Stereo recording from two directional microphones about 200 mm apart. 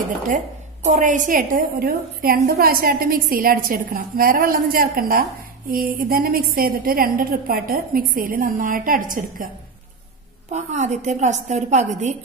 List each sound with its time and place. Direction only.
0.9 s a woman's voice: 40° right (ahead or behind)
10.5 s a woman's voice: 35° right (ahead or behind)